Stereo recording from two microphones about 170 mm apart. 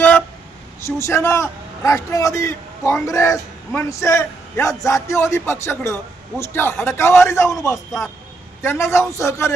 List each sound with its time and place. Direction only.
0.9 s a man's voice: 15° left (ahead or behind)